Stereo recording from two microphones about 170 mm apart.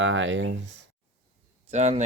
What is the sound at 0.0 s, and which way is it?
Speech, 90° right.